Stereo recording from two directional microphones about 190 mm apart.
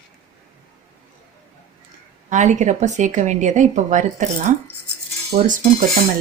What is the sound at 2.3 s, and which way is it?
A woman's voice, 40° right (ahead or behind).